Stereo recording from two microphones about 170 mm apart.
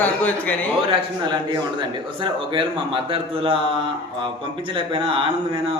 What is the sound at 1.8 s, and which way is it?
Speech, 30° right (ahead or behind).